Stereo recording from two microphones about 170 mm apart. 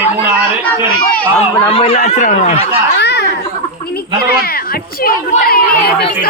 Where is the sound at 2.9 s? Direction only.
80° left.